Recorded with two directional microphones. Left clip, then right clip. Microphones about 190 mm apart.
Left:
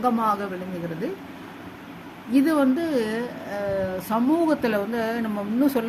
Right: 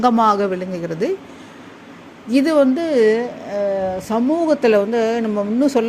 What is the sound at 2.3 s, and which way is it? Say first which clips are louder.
Speech: right 6 dB; 35° right (ahead or behind).